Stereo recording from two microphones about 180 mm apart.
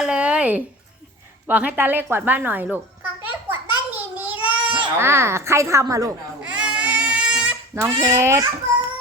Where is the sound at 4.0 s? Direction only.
10° right (ahead or behind).